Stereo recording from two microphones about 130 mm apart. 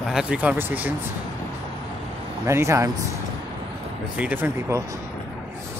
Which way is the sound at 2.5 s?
20° right (ahead or behind).